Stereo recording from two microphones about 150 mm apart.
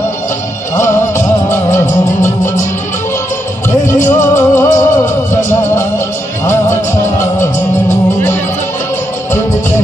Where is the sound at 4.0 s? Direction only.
55° left (ahead or behind).